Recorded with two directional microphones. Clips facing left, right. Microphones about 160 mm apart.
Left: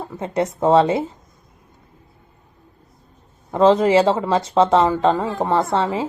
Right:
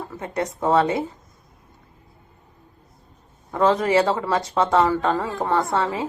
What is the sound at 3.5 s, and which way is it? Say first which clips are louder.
A woman's voice: left 5 dB; 25° left (ahead or behind).